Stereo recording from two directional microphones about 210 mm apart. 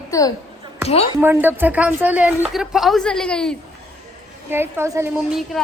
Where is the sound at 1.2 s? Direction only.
10° right (ahead or behind).